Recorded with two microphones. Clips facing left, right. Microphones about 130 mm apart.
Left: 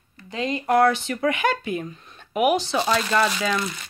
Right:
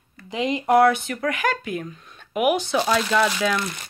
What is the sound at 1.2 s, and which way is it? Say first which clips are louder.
Speech: left 2 dB; centre (ahead or behind).